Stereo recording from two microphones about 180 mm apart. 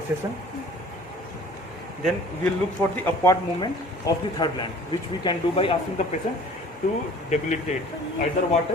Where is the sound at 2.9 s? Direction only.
15° left (ahead or behind); by 6.0 s 30° left (ahead or behind).